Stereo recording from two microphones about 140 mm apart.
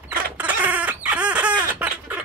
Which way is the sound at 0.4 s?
10° right (ahead or behind).